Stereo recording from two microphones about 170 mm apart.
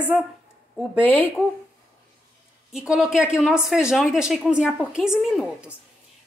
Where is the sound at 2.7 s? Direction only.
Centre (ahead or behind).